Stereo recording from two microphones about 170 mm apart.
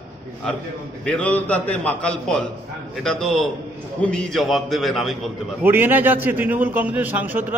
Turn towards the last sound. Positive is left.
turn(degrees=-10)  # may be behind; listen again after turning